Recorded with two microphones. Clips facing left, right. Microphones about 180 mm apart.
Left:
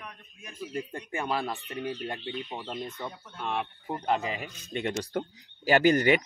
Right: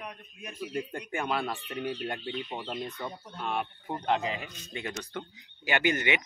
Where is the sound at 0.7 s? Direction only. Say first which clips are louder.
Even; 25° left (ahead or behind).